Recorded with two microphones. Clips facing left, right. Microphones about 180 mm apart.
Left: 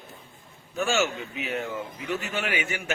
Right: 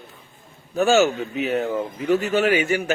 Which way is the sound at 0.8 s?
40° right (ahead or behind).